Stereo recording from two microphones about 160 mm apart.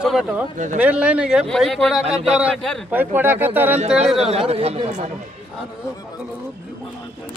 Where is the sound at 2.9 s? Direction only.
10° right (ahead or behind).